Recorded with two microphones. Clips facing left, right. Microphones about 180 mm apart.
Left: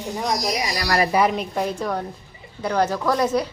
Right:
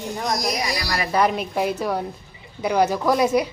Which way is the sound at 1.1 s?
Centre (ahead or behind).